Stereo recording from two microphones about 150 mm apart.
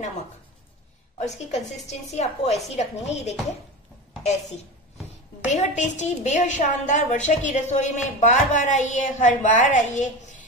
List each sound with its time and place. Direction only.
1.9 s a woman's voice: 45° left (ahead or behind)